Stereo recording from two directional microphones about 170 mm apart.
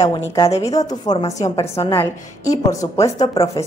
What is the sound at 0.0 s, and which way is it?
A woman's voice, 25° left (ahead or behind).